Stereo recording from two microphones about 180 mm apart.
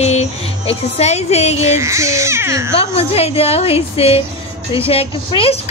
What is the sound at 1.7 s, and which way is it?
Speech, 15° right (ahead or behind).